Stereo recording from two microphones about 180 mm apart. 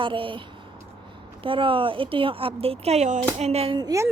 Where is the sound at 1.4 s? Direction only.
30° right (ahead or behind).